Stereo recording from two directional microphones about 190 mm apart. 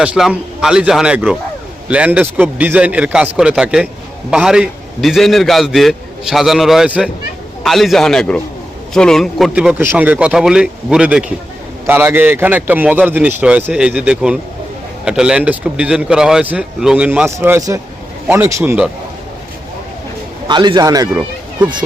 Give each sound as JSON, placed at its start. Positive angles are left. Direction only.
{"t": 0.0, "sound": "a man's voice", "side_deg": -5}
{"t": 9.7, "sound": "a man's voice", "side_deg": -10}
{"t": 20.5, "sound": "a man's voice", "side_deg": -25}